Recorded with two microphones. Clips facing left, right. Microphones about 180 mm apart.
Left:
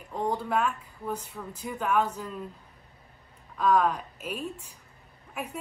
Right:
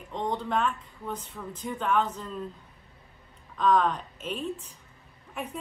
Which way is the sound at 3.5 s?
10° left (ahead or behind).